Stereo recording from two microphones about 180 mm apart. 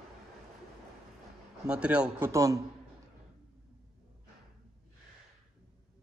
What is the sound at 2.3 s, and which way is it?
Speech, 20° right (ahead or behind).